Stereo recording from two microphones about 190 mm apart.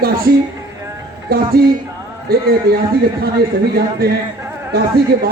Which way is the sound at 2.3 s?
55° right (ahead or behind).